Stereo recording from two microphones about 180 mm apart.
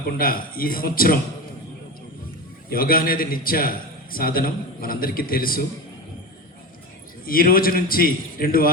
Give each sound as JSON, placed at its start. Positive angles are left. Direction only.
{"t": 0.2, "sound": "a man's voice", "side_deg": 55}
{"t": 2.6, "sound": "a man's voice", "side_deg": 55}
{"t": 7.3, "sound": "a man's voice", "side_deg": 55}